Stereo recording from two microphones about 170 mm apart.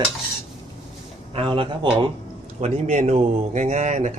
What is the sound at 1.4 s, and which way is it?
Speech, 30° right (ahead or behind).